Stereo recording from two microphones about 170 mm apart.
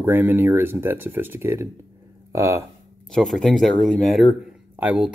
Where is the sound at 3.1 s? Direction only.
Centre (ahead or behind).